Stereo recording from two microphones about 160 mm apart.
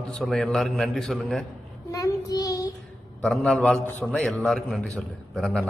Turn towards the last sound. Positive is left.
turn(degrees=0)  # may be behind; listen again after turning